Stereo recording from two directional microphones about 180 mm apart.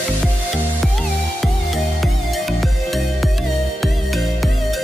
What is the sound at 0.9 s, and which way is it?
Music, centre (ahead or behind).